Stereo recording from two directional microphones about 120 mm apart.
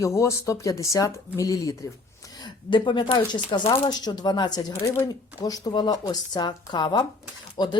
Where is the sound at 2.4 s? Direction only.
40° left (ahead or behind).